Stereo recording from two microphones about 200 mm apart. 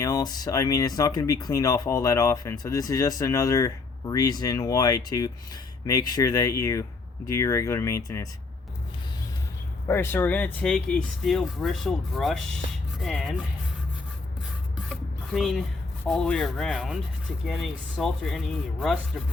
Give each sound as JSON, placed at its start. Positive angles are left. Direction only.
{"t": 0.0, "sound": "speech", "side_deg": 20}
{"t": 9.8, "sound": "speech", "side_deg": 10}
{"t": 14.8, "sound": "a sound", "side_deg": 0}
{"t": 16.0, "sound": "speech", "side_deg": 5}